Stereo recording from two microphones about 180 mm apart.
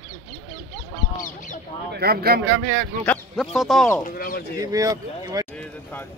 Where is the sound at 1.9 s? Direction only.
60° right (ahead or behind).